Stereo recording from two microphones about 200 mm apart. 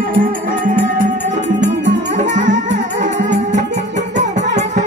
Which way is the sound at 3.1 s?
60° right (ahead or behind).